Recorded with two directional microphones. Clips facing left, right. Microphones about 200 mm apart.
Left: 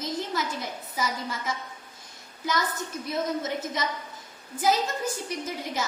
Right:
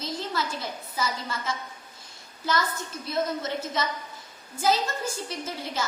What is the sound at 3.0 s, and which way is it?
Speech, 15° left (ahead or behind).